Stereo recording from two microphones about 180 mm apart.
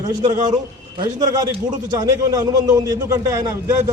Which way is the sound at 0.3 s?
25° right (ahead or behind).